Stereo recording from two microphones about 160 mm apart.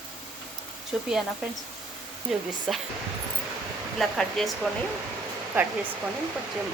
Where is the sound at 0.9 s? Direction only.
5° right (ahead or behind).